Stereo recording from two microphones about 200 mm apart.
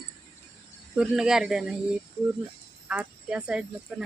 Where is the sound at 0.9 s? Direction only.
5° right (ahead or behind).